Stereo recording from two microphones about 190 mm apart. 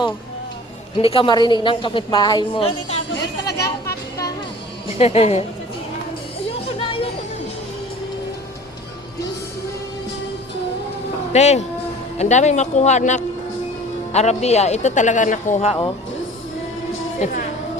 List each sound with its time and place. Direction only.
0.9 s a woman's voice: 30° left (ahead or behind)
3.1 s speech: 60° left (ahead or behind)
4.9 s a man's voice: 35° left (ahead or behind)
6.7 s music: 30° left (ahead or behind)
11.3 s a man's voice: 35° left (ahead or behind)